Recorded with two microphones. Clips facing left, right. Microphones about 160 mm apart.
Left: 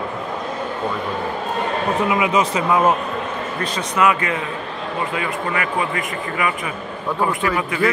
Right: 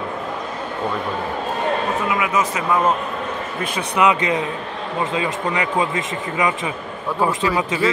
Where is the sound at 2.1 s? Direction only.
20° left (ahead or behind).